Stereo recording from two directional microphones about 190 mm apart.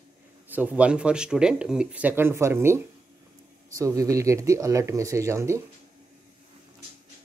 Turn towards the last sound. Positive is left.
turn(degrees=-15)  # may be behind; listen again after turning